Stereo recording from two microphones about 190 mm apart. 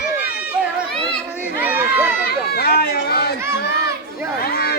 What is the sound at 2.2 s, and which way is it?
Speech, 55° left (ahead or behind).